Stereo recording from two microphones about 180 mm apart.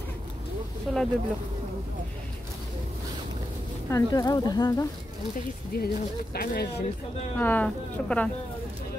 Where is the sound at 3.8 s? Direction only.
20° left (ahead or behind).